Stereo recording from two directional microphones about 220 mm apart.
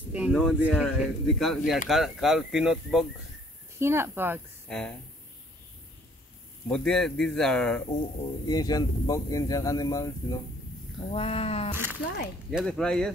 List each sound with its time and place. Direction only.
0.1 s speech: centre (ahead or behind)
4.6 s speech: 5° left (ahead or behind)
6.7 s speech: 5° left (ahead or behind)
8.2 s speech: 20° left (ahead or behind)
11.0 s speech: 25° left (ahead or behind)
11.7 s speech: 10° right (ahead or behind)
12.4 s speech: centre (ahead or behind)